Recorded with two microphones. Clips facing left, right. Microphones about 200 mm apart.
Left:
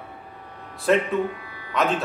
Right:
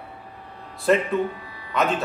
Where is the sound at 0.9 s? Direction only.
Centre (ahead or behind).